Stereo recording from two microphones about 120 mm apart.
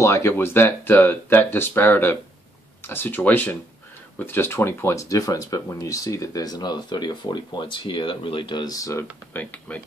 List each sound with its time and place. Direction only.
0.0 s speech: 25° left (ahead or behind)
9.3 s speech: 15° left (ahead or behind)